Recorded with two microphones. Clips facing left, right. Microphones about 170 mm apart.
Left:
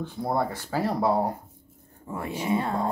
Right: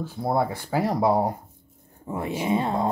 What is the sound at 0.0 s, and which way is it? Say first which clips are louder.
Speech: right 2 dB; 5° right (ahead or behind).